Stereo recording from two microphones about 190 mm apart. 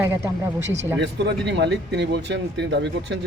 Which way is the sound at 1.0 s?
65° right (ahead or behind).